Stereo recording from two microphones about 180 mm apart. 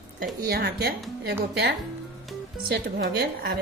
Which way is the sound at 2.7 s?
65° right (ahead or behind).